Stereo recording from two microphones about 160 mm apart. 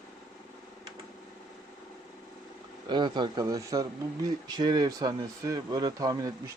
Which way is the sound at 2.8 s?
30° right (ahead or behind).